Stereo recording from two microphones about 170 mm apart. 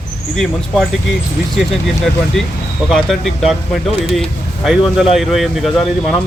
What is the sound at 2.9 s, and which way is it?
Speech, centre (ahead or behind).